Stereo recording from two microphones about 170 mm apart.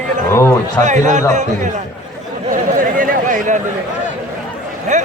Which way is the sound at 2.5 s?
55° right (ahead or behind).